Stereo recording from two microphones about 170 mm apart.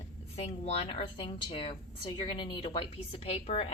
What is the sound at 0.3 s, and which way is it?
A woman's voice, 35° left (ahead or behind).